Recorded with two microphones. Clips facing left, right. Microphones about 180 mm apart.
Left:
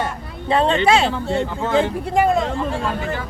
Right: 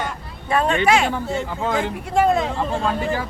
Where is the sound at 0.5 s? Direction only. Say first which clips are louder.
Left 2 dB; 25° left (ahead or behind).